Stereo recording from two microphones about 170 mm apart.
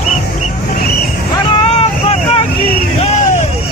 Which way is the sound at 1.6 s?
35° left (ahead or behind).